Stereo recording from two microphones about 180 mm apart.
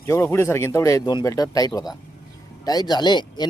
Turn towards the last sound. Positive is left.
turn(degrees=25)  # may be behind; listen again after turning